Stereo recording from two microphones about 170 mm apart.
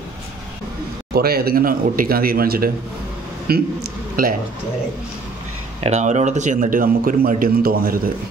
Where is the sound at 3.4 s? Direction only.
65° right (ahead or behind).